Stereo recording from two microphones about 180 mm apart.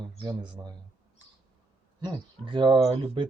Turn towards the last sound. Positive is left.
turn(degrees=-30)  # may be behind; listen again after turning